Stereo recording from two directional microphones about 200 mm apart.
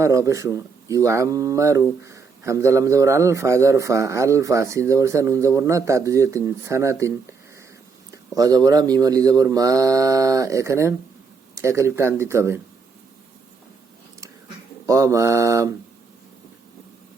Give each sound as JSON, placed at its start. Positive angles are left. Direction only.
{"t": 0.0, "sound": "a man's voice", "side_deg": -15}
{"t": 8.1, "sound": "a man's voice", "side_deg": -15}
{"t": 14.8, "sound": "a man's voice", "side_deg": -15}